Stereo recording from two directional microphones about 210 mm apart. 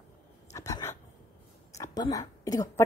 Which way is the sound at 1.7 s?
15° left (ahead or behind).